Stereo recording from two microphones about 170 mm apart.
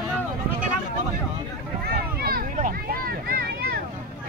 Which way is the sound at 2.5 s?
55° right (ahead or behind).